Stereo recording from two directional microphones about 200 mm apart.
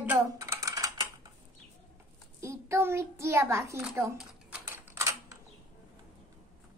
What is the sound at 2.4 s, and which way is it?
A child's voice, 15° right (ahead or behind).